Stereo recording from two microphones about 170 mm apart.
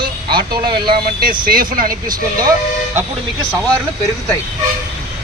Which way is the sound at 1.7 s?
55° right (ahead or behind).